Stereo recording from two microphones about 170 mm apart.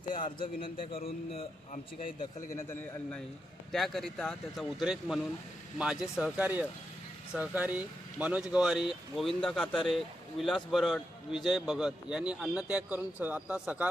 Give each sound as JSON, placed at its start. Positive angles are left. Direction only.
{"t": 0.1, "sound": "a man's voice", "side_deg": 30}
{"t": 2.5, "sound": "a man's voice", "side_deg": 15}